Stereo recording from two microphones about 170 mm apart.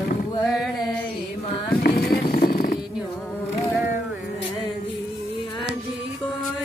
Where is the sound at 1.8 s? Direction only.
65° left (ahead or behind).